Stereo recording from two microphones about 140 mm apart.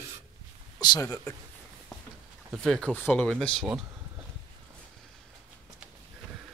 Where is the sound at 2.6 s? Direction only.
5° left (ahead or behind).